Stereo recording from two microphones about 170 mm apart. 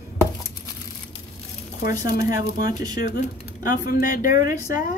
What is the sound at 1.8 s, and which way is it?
Speech, 55° left (ahead or behind).